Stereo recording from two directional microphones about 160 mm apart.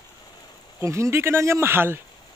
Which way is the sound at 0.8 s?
20° right (ahead or behind).